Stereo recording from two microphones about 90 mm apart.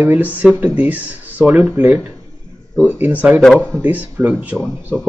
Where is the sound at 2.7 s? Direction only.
15° left (ahead or behind).